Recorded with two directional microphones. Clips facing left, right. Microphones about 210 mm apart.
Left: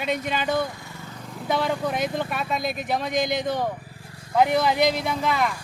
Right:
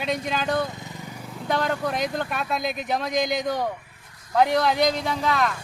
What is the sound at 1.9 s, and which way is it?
Speech, 5° left (ahead or behind).